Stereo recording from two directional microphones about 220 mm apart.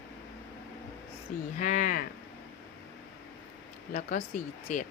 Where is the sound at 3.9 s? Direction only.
35° left (ahead or behind).